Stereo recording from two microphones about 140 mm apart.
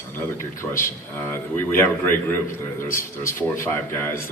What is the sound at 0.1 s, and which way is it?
A man's voice, 15° left (ahead or behind).